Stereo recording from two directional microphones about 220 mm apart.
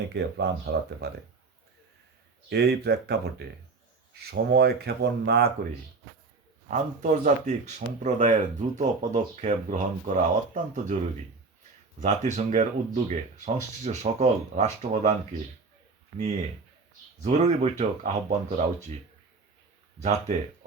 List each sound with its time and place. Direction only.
0.1 s speech: 50° right (ahead or behind)
2.5 s speech: 50° right (ahead or behind)
6.7 s speech: 35° right (ahead or behind)
11.9 s speech: 35° right (ahead or behind)
17.2 s speech: 30° right (ahead or behind)
20.0 s speech: 30° right (ahead or behind)